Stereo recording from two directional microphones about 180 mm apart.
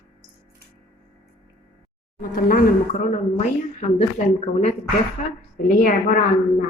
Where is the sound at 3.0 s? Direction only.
40° left (ahead or behind).